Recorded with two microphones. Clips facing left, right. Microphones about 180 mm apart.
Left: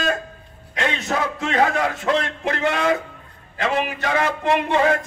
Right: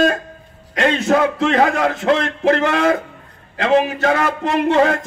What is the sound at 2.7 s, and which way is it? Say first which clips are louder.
Music: right 4 dB; 40° right (ahead or behind).